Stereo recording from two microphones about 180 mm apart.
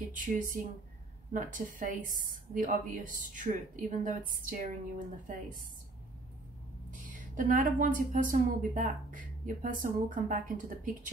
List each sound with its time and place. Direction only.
0.1 s a woman's voice: 45° right (ahead or behind)
6.9 s a woman's voice: 45° right (ahead or behind)